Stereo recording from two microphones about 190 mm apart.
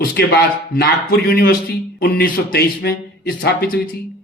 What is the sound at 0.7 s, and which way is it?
A man's voice, 55° left (ahead or behind).